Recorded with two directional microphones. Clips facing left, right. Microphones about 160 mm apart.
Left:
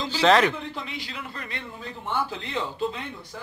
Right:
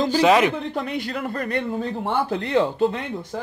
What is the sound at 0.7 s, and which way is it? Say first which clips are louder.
A man's voice: right 10 dB; 50° right (ahead or behind).